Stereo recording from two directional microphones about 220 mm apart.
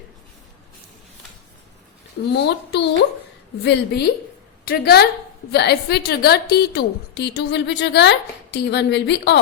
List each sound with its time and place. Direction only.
2.3 s a woman's voice: 50° left (ahead or behind)